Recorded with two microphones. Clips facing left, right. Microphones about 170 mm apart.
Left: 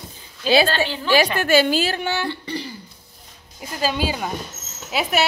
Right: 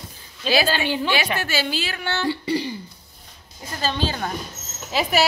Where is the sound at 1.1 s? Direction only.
45° left (ahead or behind).